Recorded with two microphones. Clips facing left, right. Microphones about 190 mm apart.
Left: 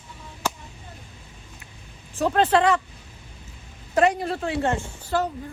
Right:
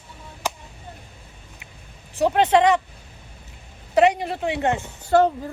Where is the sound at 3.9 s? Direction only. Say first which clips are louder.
Right 3 dB; 15° right (ahead or behind).